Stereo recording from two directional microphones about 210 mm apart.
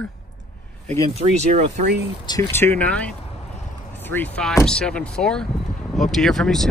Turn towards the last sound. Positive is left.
turn(degrees=0)  # may be behind; listen again after turning